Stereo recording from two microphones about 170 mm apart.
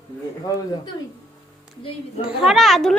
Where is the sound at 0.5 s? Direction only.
20° left (ahead or behind).